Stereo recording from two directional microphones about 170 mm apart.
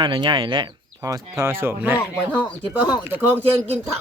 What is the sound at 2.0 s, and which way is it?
Speech, 5° left (ahead or behind).